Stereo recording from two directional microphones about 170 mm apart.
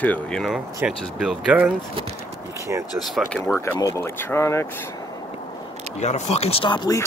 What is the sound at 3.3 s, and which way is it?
Speech, 10° left (ahead or behind).